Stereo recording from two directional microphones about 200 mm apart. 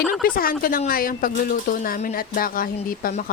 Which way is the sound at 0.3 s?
45° left (ahead or behind).